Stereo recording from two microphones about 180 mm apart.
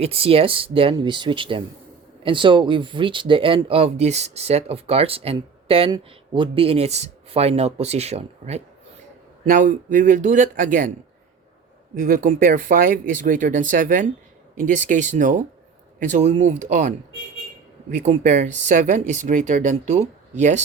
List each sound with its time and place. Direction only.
0.0 s speech: 35° right (ahead or behind)
9.5 s speech: 45° right (ahead or behind)
11.9 s speech: 50° right (ahead or behind)
17.9 s speech: 40° right (ahead or behind)